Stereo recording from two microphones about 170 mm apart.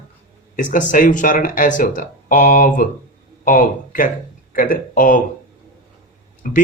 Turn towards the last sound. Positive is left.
turn(degrees=50)  # may be behind; listen again after turning